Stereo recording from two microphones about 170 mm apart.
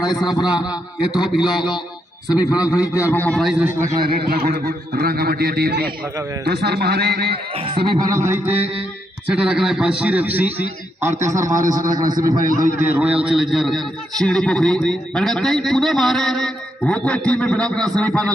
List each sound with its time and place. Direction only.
1.2 s a man's voice: 5° right (ahead or behind)
2.2 s a man's voice: 25° left (ahead or behind)
3.1 s a man's voice: 10° left (ahead or behind)
4.0 s a man's voice: 60° right (ahead or behind)
7.6 s a man's voice: 30° right (ahead or behind)
9.3 s a man's voice: 5° right (ahead or behind); by 12.4 s 25° right (ahead or behind)
12.4 s a man's voice: 50° right (ahead or behind)
12.9 s a man's voice: 5° right (ahead or behind)